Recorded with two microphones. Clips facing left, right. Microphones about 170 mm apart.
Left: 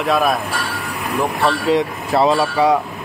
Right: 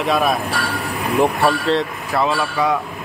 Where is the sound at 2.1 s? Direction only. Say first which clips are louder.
Left 5 dB; 35° left (ahead or behind).